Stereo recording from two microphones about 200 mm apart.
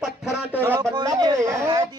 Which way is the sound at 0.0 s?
5° right (ahead or behind).